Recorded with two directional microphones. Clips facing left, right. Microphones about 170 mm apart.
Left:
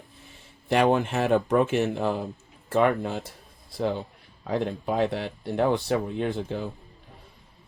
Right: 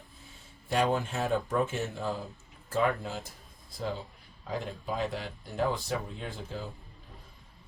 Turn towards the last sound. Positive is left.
turn(degrees=65)  # may be behind; listen again after turning